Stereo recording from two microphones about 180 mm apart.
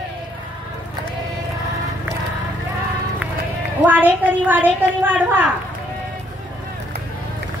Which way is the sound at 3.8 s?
10° right (ahead or behind).